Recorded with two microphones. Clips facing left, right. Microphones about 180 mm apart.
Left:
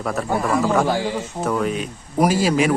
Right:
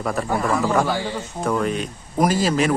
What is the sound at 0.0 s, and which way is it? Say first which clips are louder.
A man's voice: even; centre (ahead or behind).